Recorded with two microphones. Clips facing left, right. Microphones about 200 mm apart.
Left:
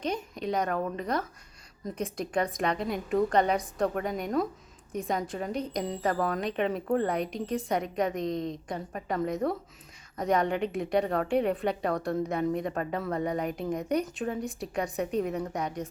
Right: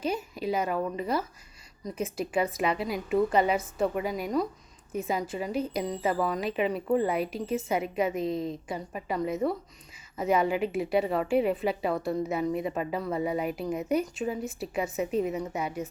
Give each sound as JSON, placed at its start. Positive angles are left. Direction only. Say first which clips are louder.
{"t": 0.0, "sound": "a woman's voice", "louder": "right 1 dB", "side_deg": -5}